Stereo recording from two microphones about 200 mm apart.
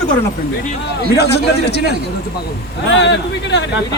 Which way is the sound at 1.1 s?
55° left (ahead or behind).